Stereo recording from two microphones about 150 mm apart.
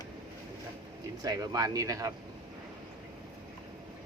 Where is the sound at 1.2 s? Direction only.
25° right (ahead or behind).